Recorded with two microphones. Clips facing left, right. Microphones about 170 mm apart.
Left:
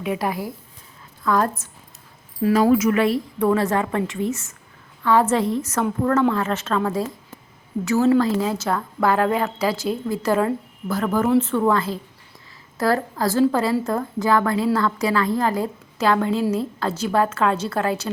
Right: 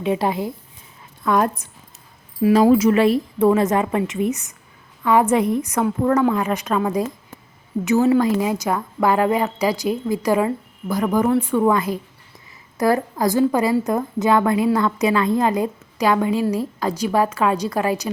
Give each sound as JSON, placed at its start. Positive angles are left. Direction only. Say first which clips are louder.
{"t": 0.0, "sound": "a woman's voice", "louder": "right 4 dB", "side_deg": -25}
{"t": 2.7, "sound": "a woman's voice", "louder": "right 3 dB", "side_deg": -30}